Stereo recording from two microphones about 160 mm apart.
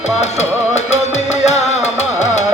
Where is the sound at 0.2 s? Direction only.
45° left (ahead or behind).